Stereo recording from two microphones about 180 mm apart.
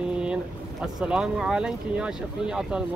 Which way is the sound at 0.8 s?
5° right (ahead or behind).